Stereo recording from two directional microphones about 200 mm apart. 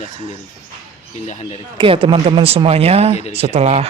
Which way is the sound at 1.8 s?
25° right (ahead or behind).